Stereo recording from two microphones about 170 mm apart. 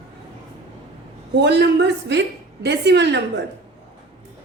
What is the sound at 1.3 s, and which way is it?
A woman's voice, 85° right.